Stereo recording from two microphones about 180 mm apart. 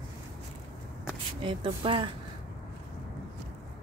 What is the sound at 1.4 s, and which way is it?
Speech, 30° right (ahead or behind).